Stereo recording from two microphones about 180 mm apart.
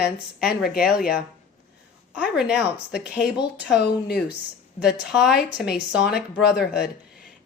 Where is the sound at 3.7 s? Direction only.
70° left (ahead or behind).